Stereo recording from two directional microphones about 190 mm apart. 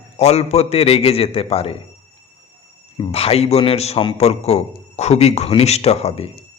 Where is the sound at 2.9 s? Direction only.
30° left (ahead or behind).